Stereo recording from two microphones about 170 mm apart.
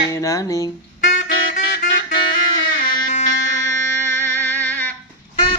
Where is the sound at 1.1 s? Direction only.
50° left (ahead or behind).